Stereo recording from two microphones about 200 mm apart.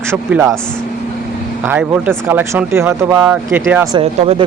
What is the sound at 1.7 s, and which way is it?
Speech, 10° right (ahead or behind).